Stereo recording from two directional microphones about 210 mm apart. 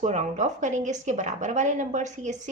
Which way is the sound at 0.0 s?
35° right (ahead or behind).